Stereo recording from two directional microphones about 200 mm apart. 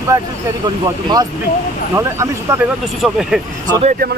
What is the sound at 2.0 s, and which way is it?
Speech, 15° right (ahead or behind).